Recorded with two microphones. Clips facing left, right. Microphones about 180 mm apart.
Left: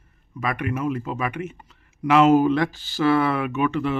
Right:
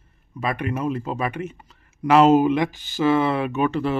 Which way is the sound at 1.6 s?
35° right (ahead or behind).